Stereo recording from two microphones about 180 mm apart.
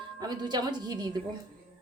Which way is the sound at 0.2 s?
20° right (ahead or behind).